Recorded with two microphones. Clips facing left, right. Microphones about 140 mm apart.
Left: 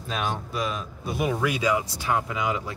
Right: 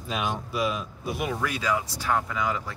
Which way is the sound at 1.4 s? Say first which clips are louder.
Left 3 dB; 15° left (ahead or behind).